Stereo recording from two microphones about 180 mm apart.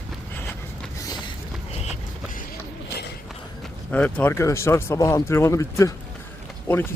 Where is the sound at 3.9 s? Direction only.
10° left (ahead or behind).